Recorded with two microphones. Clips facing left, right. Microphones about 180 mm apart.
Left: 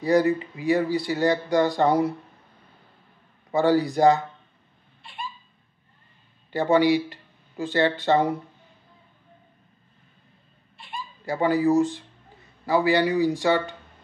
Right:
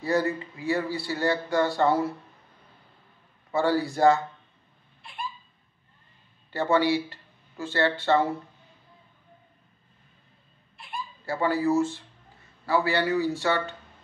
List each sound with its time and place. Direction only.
0.0 s speech: 15° left (ahead or behind)
3.5 s speech: 15° left (ahead or behind)
6.5 s speech: 15° left (ahead or behind)
11.2 s speech: 15° left (ahead or behind)